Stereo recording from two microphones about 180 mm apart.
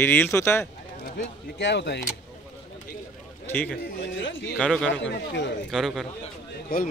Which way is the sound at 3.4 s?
10° left (ahead or behind).